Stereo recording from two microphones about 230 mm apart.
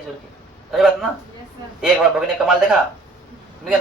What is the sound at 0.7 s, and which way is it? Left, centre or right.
A man's voice, centre.